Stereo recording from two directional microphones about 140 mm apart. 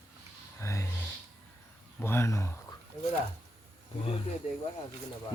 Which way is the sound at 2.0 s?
15° left (ahead or behind).